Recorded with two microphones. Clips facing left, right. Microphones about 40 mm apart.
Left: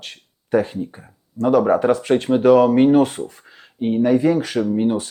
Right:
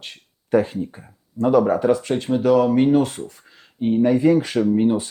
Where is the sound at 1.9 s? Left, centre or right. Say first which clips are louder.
Left 3 dB; centre.